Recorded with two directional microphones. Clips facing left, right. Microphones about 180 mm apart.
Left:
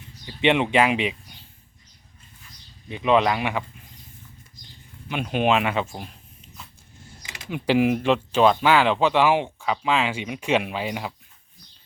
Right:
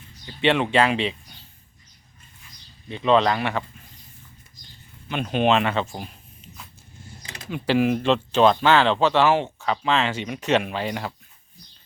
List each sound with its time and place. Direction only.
0.3 s speech: 15° left (ahead or behind)
2.9 s speech: 15° left (ahead or behind)
5.0 s speech: 10° left (ahead or behind)
7.5 s speech: 15° left (ahead or behind)